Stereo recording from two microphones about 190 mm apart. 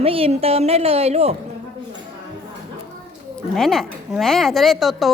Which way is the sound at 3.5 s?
Centre (ahead or behind).